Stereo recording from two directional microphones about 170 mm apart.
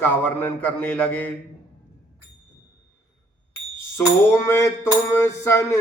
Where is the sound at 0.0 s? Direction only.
10° left (ahead or behind).